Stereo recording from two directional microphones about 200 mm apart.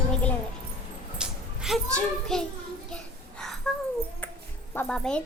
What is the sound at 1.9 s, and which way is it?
Speech, 5° left (ahead or behind).